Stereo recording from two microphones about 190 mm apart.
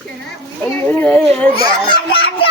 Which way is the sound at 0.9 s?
10° left (ahead or behind).